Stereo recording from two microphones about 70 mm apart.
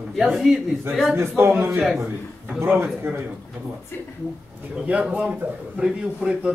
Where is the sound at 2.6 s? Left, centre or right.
Right.